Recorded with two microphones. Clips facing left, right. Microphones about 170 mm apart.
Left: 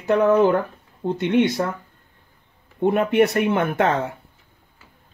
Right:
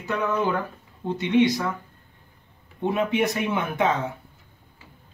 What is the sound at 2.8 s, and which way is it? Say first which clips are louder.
Speech: left 6 dB; 65° left (ahead or behind).